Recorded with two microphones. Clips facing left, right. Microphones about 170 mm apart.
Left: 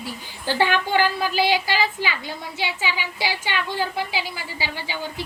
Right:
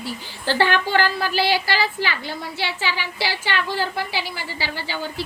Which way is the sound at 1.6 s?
15° left (ahead or behind).